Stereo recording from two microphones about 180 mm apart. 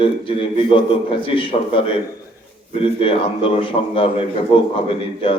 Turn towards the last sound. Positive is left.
turn(degrees=30)  # may be behind; listen again after turning